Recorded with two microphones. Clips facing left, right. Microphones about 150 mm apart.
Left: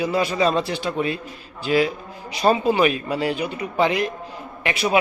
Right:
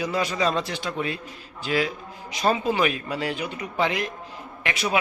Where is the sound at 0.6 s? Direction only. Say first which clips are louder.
Left 5 dB; 10° left (ahead or behind).